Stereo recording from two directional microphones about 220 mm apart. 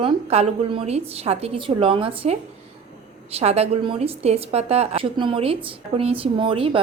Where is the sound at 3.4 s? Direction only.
30° right (ahead or behind).